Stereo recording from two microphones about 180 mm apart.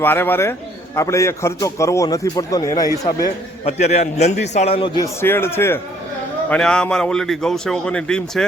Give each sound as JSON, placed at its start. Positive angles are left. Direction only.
{"t": 0.0, "sound": "a man's voice", "side_deg": 10}
{"t": 3.6, "sound": "a man's voice", "side_deg": 35}
{"t": 5.0, "sound": "a man's voice", "side_deg": 10}